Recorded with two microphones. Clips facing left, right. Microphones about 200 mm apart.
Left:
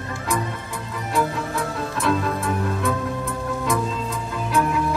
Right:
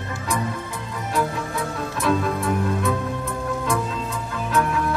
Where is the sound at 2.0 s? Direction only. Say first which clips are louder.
Right 1 dB; centre (ahead or behind).